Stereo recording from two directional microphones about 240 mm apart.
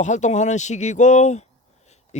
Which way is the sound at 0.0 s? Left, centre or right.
Left.